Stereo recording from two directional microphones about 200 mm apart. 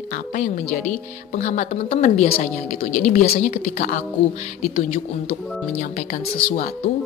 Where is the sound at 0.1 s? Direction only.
40° left (ahead or behind).